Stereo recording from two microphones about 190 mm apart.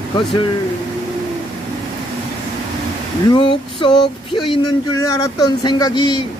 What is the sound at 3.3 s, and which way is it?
Male singing, 25° left (ahead or behind).